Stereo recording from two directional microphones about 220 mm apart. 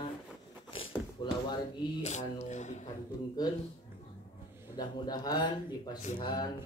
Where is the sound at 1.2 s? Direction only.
20° left (ahead or behind).